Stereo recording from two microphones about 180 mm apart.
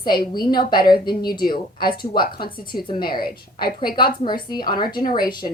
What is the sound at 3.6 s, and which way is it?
Speech, 60° left (ahead or behind).